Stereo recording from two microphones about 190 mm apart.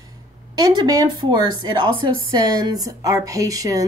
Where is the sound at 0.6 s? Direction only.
20° right (ahead or behind).